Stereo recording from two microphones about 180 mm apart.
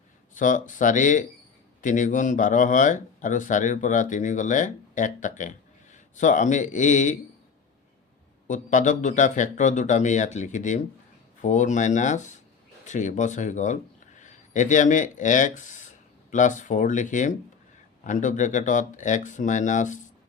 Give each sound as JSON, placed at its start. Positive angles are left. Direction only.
{"t": 0.3, "sound": "speech", "side_deg": 45}
{"t": 8.4, "sound": "speech", "side_deg": 45}